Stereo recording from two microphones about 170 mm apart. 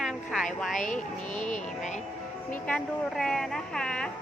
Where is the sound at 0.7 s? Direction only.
50° left (ahead or behind).